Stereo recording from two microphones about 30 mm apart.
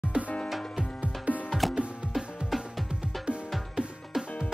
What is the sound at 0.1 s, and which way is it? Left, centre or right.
Music, right.